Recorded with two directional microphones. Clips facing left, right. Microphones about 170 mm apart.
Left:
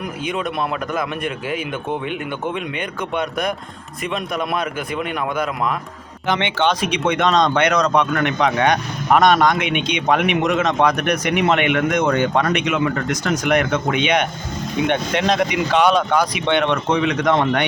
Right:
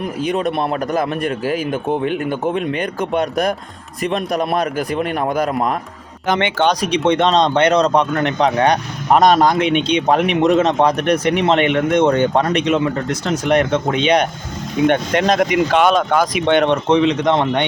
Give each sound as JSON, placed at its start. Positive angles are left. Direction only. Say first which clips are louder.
{"t": 0.2, "sound": "speech", "louder": "right 5 dB", "side_deg": -35}
{"t": 14.8, "sound": "speech", "louder": "right 4 dB", "side_deg": -45}
{"t": 16.9, "sound": "speech", "louder": "right 3 dB", "side_deg": -25}